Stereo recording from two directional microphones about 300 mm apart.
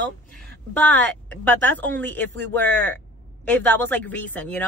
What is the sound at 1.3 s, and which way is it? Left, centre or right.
Speech, centre.